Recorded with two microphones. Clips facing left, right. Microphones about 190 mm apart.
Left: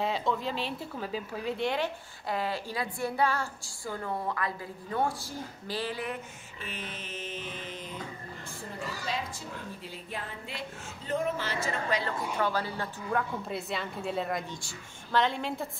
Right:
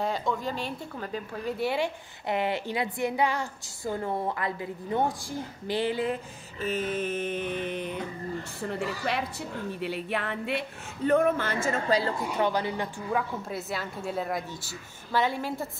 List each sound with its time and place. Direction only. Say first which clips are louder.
0.0 s a woman's voice: right 1 dB; centre (ahead or behind)
1.6 s a woman's voice: right 3 dB; 10° right (ahead or behind)
2.2 s a woman's voice: right 4 dB; 25° right (ahead or behind)
6.6 s a sound: right 13 dB; 45° right (ahead or behind); by 9.2 s 65° right (ahead or behind)
9.8 s music: right 9 dB; 70° right (ahead or behind)
11.1 s a sound: right 8 dB; 60° right (ahead or behind)
12.4 s a woman's voice: right 4 dB; 20° right (ahead or behind)
13.1 s a woman's voice: even; centre (ahead or behind)